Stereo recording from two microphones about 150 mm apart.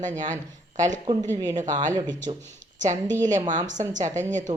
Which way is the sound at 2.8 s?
55° right (ahead or behind).